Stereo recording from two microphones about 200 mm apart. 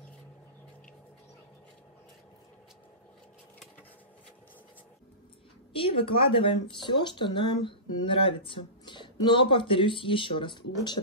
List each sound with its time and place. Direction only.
5.7 s speech: 25° left (ahead or behind)